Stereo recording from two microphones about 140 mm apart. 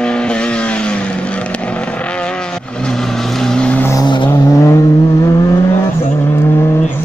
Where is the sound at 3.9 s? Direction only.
30° left (ahead or behind).